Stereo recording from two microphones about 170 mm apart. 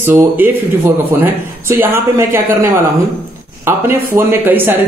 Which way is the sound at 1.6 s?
15° right (ahead or behind).